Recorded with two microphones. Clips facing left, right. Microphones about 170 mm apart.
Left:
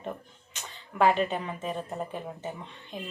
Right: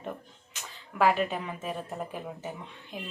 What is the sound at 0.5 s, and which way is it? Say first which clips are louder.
Speech: left 2 dB; 5° right (ahead or behind).